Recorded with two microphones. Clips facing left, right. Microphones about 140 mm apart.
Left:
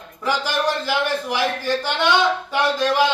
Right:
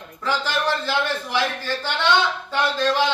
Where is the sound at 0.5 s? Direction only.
15° left (ahead or behind).